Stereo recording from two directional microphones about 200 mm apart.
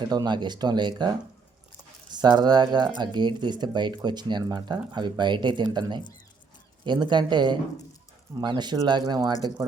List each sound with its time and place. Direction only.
0.1 s speech: 20° right (ahead or behind)